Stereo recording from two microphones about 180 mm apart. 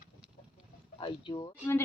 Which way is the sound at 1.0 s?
25° left (ahead or behind).